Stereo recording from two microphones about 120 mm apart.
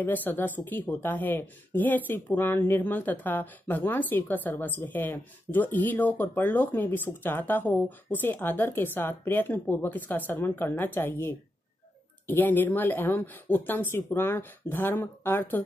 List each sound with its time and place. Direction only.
0.0 s speech: 15° left (ahead or behind)